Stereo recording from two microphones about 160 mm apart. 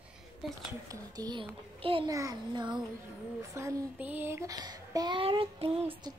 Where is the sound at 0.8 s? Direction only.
25° right (ahead or behind).